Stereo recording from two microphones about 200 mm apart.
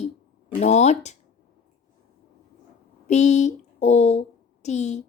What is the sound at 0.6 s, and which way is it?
Speech, 35° left (ahead or behind).